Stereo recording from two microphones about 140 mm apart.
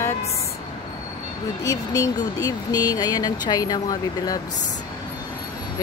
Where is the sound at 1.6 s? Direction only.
25° left (ahead or behind).